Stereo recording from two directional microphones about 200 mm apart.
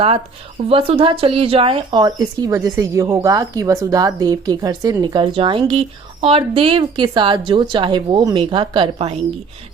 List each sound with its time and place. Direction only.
0.7 s speech: 25° right (ahead or behind)